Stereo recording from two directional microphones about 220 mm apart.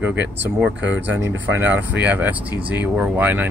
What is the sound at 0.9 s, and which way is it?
Speech, 55° right (ahead or behind).